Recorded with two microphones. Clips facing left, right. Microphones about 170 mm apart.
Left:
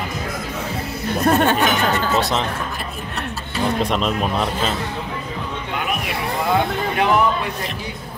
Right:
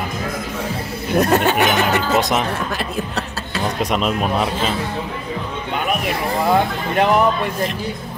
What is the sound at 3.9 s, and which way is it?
Speech, 5° right (ahead or behind).